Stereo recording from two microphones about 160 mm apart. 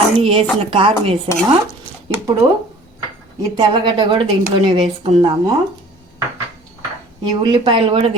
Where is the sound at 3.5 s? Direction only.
30° right (ahead or behind).